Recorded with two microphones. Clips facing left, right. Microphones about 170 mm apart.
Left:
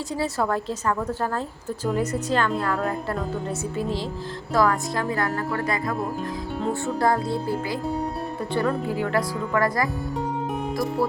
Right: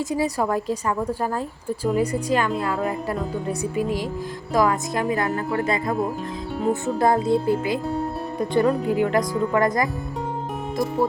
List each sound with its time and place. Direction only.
0.1 s a woman's voice: 15° right (ahead or behind)